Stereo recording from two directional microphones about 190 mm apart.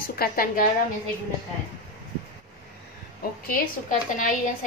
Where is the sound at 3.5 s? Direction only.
45° left (ahead or behind).